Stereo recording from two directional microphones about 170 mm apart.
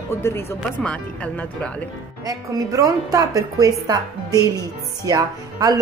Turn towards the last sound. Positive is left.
turn(degrees=-25)  # may be behind; listen again after turning